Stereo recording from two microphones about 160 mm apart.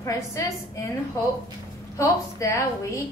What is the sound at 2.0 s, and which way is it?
A woman's voice, 20° left (ahead or behind).